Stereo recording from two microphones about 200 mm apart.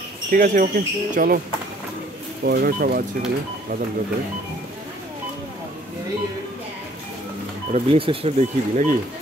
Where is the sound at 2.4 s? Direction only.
50° right (ahead or behind).